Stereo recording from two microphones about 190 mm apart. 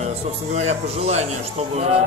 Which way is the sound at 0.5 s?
35° right (ahead or behind).